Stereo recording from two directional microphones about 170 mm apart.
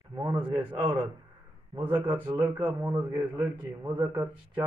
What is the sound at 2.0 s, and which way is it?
Speech, 10° right (ahead or behind).